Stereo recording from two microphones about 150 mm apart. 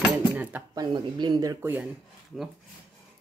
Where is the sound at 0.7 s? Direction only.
30° right (ahead or behind).